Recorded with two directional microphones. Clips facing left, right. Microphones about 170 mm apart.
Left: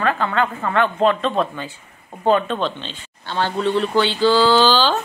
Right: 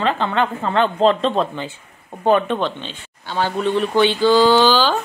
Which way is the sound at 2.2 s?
15° right (ahead or behind).